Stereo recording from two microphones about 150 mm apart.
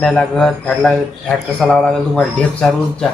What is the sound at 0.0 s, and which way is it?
Speech, 5° left (ahead or behind).